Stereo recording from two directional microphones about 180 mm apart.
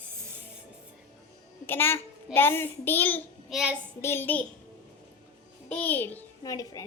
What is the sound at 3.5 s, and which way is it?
Speech, 5° right (ahead or behind).